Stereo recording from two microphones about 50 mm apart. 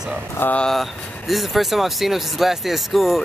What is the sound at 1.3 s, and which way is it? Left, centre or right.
Speech, centre.